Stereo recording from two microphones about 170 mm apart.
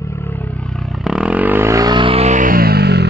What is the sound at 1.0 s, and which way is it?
Vehicle, 5° right (ahead or behind).